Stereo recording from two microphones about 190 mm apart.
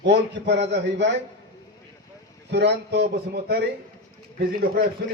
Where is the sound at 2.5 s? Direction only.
60° right (ahead or behind).